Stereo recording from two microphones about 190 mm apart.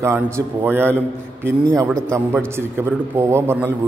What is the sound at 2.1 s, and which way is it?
A man's voice, 15° right (ahead or behind).